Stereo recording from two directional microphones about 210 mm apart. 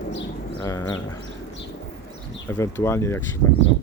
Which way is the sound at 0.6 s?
15° left (ahead or behind).